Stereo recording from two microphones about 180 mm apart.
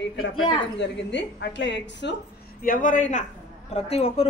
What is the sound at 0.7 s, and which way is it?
A woman's voice, 80° left.